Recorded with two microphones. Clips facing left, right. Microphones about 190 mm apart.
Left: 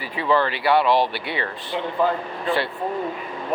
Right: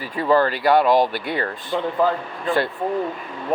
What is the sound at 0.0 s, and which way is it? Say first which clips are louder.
Speech: right 3 dB; 45° right (ahead or behind).